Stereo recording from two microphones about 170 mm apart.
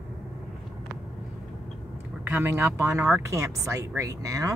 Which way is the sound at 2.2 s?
15° right (ahead or behind).